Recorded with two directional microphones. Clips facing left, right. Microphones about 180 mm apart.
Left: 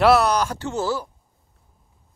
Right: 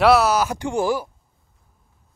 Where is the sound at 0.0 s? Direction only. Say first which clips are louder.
Right 1 dB; centre (ahead or behind).